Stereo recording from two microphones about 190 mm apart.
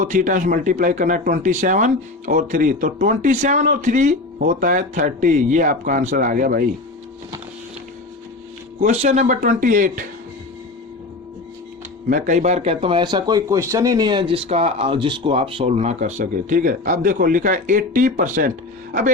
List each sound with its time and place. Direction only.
0.0 s a man's voice: 40° right (ahead or behind)
8.8 s a man's voice: 35° right (ahead or behind)
12.0 s speech: 40° right (ahead or behind)